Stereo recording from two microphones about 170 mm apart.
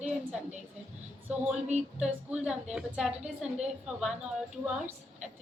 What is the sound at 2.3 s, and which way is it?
A woman's voice, 5° right (ahead or behind).